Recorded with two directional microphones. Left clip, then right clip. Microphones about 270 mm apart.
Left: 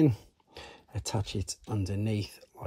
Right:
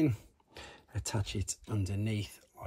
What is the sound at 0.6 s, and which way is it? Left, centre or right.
Speech, centre.